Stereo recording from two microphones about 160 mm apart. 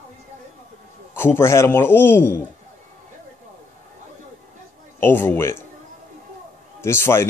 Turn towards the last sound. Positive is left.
turn(degrees=15)  # may be behind; listen again after turning